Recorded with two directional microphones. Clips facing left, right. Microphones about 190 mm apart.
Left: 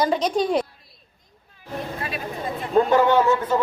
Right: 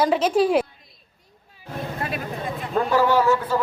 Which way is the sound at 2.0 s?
55° right (ahead or behind).